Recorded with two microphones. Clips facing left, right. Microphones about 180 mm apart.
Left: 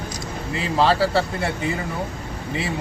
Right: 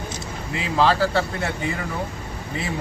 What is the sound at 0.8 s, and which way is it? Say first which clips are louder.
Speech: left 1 dB; 30° left (ahead or behind).